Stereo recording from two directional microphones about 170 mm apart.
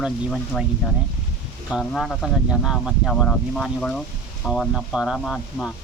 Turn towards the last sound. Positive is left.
turn(degrees=0)  # may be behind; listen again after turning